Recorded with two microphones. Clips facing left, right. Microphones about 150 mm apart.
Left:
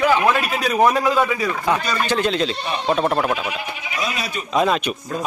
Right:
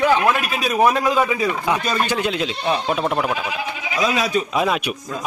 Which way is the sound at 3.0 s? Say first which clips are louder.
Left 1 dB; centre (ahead or behind).